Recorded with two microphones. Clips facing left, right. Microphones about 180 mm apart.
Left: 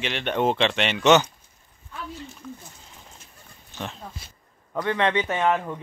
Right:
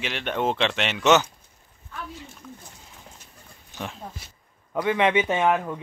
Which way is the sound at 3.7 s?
10° right (ahead or behind).